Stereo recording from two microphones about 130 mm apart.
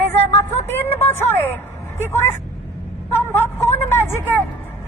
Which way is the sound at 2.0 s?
15° left (ahead or behind).